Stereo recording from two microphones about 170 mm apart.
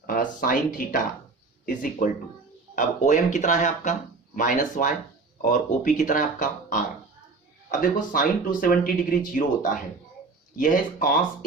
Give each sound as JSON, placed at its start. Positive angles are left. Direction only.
{"t": 0.0, "sound": "speech", "side_deg": 55}